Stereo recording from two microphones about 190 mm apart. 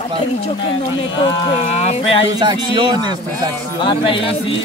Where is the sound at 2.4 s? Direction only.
25° right (ahead or behind).